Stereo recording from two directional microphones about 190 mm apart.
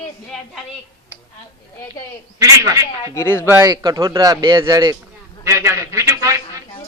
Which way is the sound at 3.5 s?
15° right (ahead or behind).